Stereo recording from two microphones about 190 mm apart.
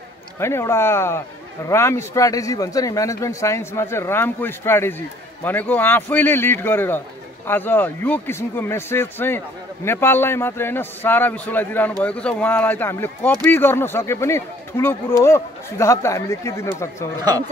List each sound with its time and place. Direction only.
0.4 s a man's voice: 15° left (ahead or behind)